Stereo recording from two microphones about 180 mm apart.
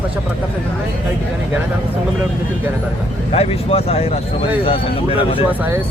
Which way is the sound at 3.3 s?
35° left (ahead or behind).